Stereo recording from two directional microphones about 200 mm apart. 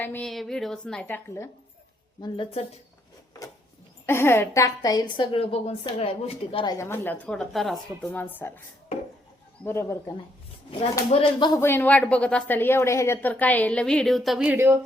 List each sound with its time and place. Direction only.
0.0 s a woman's voice: 5° left (ahead or behind)
2.2 s a woman's voice: 25° left (ahead or behind)
4.0 s a woman's voice: 10° left (ahead or behind)
6.7 s a woman's voice: 10° left (ahead or behind)
9.6 s a woman's voice: 15° left (ahead or behind)
11.1 s a woman's voice: 25° left (ahead or behind); by 14.8 s 10° right (ahead or behind)